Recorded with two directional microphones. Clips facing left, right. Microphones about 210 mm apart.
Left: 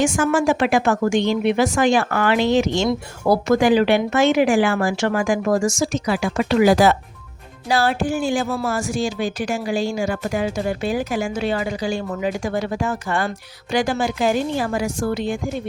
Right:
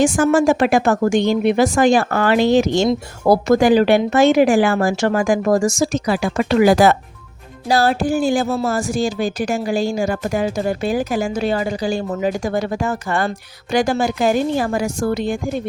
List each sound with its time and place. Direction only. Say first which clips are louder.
0.0 s speech: right 4 dB; 35° right (ahead or behind); by 6.9 s 55° right (ahead or behind)
7.7 s speech: right 3 dB; 40° right (ahead or behind)